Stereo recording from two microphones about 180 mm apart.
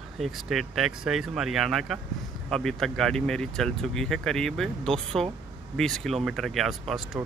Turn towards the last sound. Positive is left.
turn(degrees=0)  # may be behind; listen again after turning